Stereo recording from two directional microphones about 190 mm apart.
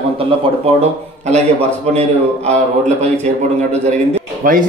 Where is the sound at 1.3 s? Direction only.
35° right (ahead or behind).